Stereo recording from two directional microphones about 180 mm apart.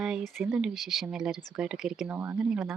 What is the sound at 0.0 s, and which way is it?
Speech, 5° right (ahead or behind).